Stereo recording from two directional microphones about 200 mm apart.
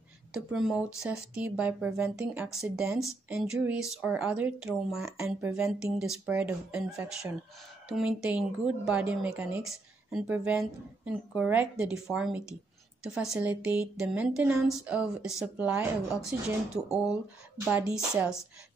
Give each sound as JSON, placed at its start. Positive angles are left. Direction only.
{"t": 0.3, "sound": "a woman's voice", "side_deg": 0}